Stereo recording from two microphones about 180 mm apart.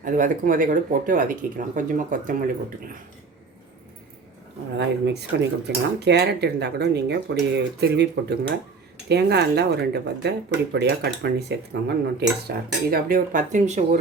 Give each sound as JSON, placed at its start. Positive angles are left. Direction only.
{"t": 0.0, "sound": "speech", "side_deg": -50}
{"t": 4.8, "sound": "speech", "side_deg": -70}